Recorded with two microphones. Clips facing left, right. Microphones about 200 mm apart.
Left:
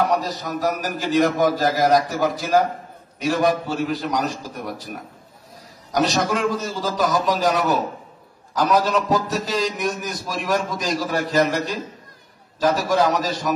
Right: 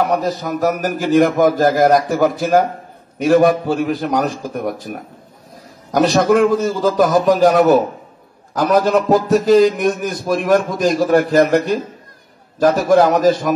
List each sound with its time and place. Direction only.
0.1 s a man's voice: 55° right (ahead or behind)